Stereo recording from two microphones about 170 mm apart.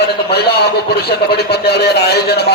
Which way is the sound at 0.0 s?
75° left (ahead or behind).